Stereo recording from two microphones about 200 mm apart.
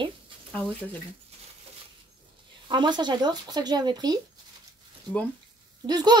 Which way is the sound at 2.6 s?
25° right (ahead or behind).